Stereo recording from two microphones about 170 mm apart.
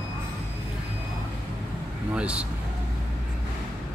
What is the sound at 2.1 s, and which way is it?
Speech, 5° right (ahead or behind).